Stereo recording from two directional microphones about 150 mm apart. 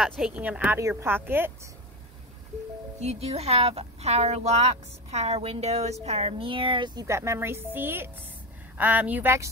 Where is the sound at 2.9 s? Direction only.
45° right (ahead or behind).